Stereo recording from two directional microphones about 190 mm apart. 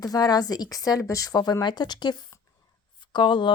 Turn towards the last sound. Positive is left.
turn(degrees=25)  # may be behind; listen again after turning